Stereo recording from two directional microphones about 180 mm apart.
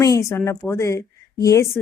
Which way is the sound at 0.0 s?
15° left (ahead or behind).